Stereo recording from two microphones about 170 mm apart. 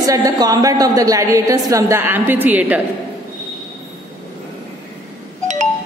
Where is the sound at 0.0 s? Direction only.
20° right (ahead or behind).